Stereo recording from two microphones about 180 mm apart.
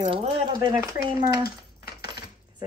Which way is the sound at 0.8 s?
15° right (ahead or behind).